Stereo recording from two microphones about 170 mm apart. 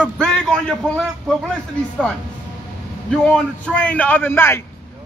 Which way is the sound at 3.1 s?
5° left (ahead or behind).